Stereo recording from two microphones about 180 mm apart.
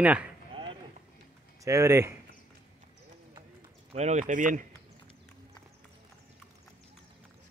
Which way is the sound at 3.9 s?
40° right (ahead or behind).